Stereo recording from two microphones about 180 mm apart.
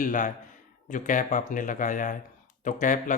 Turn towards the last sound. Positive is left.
turn(degrees=45)  # may be behind; listen again after turning